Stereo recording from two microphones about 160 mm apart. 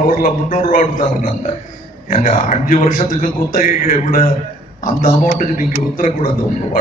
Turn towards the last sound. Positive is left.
turn(degrees=55)  # may be behind; listen again after turning